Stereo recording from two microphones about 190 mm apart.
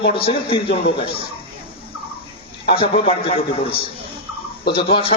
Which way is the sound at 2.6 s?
30° left (ahead or behind).